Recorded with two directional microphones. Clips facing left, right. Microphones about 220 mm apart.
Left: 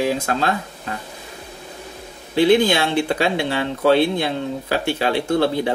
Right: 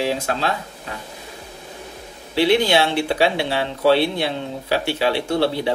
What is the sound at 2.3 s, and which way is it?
Speech, 50° left (ahead or behind).